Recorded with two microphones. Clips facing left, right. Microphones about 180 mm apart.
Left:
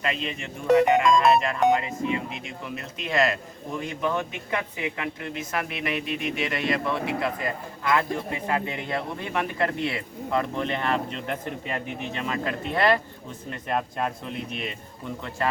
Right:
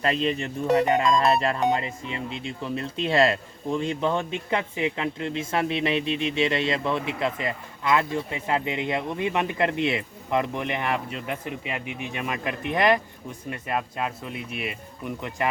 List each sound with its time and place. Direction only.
0.0 s speech: 35° right (ahead or behind); by 13.0 s 15° right (ahead or behind)
13.5 s speech: 5° right (ahead or behind)